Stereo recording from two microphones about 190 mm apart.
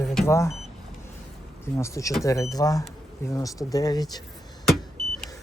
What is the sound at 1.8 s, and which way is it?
Speech, 15° left (ahead or behind).